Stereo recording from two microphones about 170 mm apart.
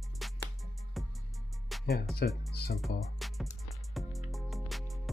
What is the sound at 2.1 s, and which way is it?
Speech, 65° left (ahead or behind).